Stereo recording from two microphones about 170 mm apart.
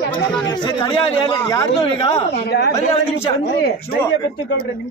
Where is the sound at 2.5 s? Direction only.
85° left.